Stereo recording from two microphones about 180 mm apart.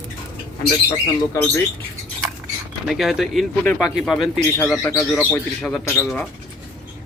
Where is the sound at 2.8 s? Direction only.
Centre (ahead or behind).